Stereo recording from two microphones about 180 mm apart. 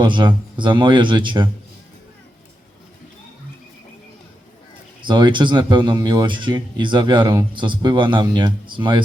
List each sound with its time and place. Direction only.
0.0 s speech: 25° right (ahead or behind)
5.0 s speech: 25° right (ahead or behind)